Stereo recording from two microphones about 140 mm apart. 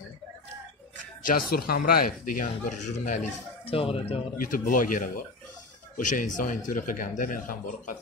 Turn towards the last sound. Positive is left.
turn(degrees=75)  # may be behind; listen again after turning